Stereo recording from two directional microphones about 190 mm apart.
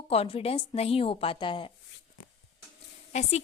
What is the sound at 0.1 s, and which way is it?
A woman's voice, 30° left (ahead or behind).